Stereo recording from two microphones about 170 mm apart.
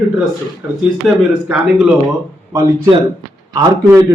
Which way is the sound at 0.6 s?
10° right (ahead or behind).